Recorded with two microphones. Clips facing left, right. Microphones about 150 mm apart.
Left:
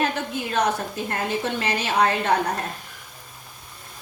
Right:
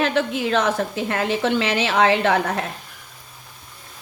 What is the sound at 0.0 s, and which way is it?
A woman's voice, 90° right.